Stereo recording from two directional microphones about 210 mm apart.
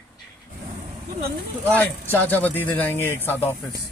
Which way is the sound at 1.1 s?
45° right (ahead or behind).